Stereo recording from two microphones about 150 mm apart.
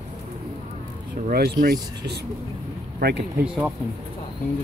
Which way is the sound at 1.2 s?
80° right.